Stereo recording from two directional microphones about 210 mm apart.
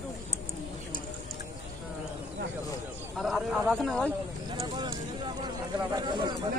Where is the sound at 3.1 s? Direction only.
Centre (ahead or behind).